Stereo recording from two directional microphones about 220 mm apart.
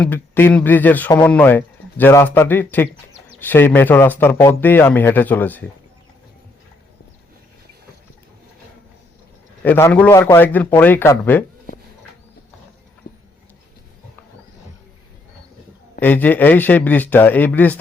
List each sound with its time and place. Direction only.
0.0 s speech: 10° left (ahead or behind)
9.6 s speech: 10° left (ahead or behind)
13.1 s a sound: 40° left (ahead or behind)
16.0 s speech: 10° left (ahead or behind)